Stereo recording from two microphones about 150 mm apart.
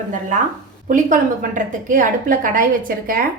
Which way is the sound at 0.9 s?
60° right (ahead or behind).